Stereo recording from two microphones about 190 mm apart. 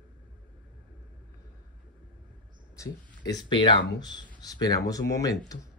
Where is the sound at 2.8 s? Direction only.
20° left (ahead or behind).